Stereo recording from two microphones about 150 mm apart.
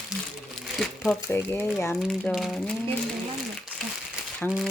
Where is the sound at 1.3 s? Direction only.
15° left (ahead or behind).